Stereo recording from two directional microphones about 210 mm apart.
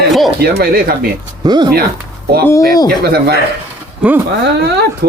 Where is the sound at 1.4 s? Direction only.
20° right (ahead or behind).